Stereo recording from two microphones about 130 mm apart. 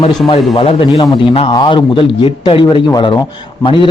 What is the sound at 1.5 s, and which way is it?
Speech, 35° left (ahead or behind).